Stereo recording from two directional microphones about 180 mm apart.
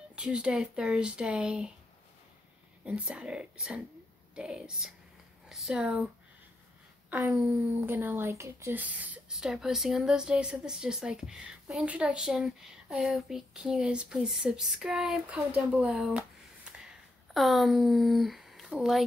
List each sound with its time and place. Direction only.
0.1 s speech: 5° right (ahead or behind)
2.8 s speech: 5° right (ahead or behind)
7.1 s speech: 10° right (ahead or behind)
17.3 s speech: centre (ahead or behind)